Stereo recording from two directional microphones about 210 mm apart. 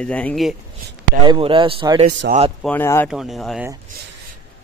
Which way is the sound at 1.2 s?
25° right (ahead or behind).